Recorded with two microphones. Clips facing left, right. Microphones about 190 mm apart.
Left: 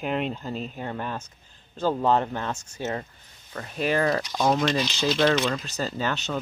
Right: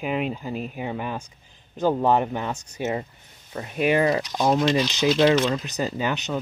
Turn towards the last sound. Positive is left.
turn(degrees=-15)  # may be behind; listen again after turning